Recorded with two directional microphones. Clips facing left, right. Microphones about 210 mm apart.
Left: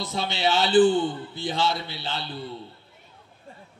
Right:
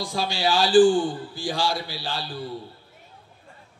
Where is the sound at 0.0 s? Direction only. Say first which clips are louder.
Right 1 dB; 20° left (ahead or behind).